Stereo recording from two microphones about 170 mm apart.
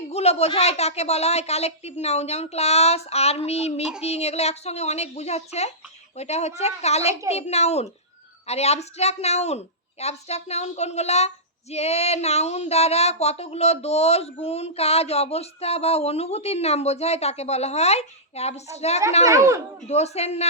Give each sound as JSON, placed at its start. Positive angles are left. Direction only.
{"t": 0.1, "sound": "speech", "side_deg": 40}
{"t": 19.2, "sound": "speech", "side_deg": -20}
{"t": 19.9, "sound": "speech", "side_deg": 40}